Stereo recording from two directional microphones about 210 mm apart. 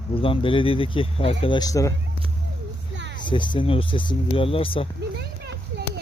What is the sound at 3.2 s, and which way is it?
Speech, 25° left (ahead or behind).